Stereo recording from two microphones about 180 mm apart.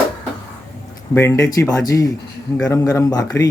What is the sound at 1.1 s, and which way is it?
Speech, 15° left (ahead or behind).